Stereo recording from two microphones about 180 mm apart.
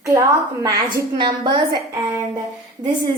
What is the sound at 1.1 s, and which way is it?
Speech, 25° right (ahead or behind).